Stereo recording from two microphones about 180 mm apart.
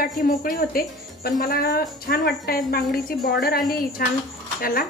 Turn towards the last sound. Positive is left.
turn(degrees=55)  # may be behind; listen again after turning